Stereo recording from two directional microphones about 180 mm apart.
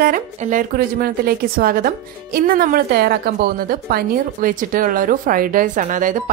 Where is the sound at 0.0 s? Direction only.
50° right (ahead or behind).